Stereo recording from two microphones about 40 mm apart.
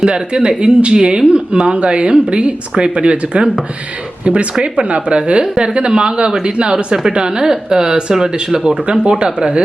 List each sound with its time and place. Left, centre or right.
0.0 s speech: right
4.6 s speech: right